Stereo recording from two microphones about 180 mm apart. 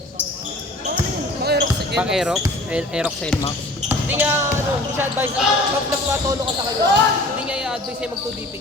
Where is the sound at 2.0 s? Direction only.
5° right (ahead or behind).